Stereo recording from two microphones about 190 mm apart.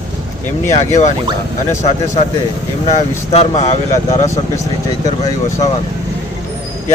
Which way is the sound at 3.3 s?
35° left (ahead or behind).